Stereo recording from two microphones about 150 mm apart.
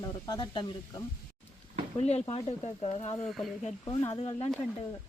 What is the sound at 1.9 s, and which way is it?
Speech, 40° left (ahead or behind).